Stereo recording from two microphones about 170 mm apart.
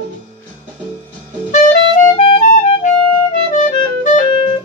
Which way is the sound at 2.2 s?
35° left (ahead or behind).